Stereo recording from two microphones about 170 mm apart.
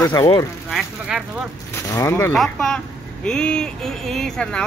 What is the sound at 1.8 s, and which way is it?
Speech, 20° left (ahead or behind).